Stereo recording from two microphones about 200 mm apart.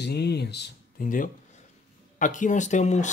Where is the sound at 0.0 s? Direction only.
55° left (ahead or behind).